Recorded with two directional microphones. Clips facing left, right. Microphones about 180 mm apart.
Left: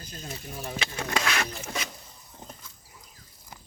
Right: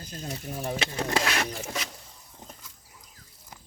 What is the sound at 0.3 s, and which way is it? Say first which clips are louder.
Speech: right 5 dB; 35° right (ahead or behind).